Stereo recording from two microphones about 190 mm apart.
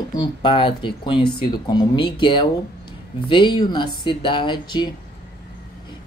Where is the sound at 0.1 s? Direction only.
25° left (ahead or behind).